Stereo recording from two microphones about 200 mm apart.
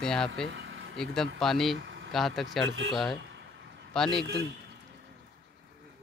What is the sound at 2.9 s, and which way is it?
Speech, centre (ahead or behind).